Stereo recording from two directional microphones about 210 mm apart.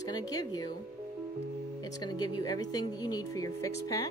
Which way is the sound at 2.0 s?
20° left (ahead or behind).